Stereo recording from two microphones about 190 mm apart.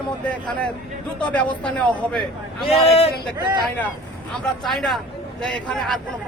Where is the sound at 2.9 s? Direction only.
30° left (ahead or behind).